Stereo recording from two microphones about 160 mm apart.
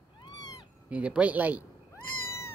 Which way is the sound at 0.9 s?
10° right (ahead or behind).